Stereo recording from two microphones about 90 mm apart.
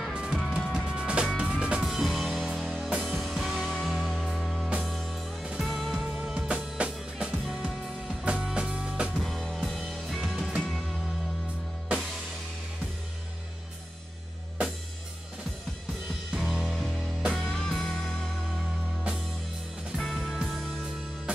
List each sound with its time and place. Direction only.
0.1 s music: 10° right (ahead or behind)
9.2 s music: 5° left (ahead or behind)
16.4 s music: 5° right (ahead or behind)
16.7 s music: 10° left (ahead or behind)
20.0 s music: 5° left (ahead or behind)